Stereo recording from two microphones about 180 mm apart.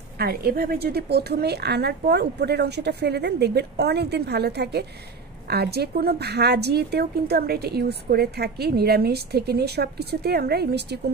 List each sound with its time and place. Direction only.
0.2 s a woman's voice: 60° right (ahead or behind)